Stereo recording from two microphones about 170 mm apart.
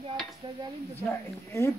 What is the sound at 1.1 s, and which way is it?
Speech, 15° left (ahead or behind).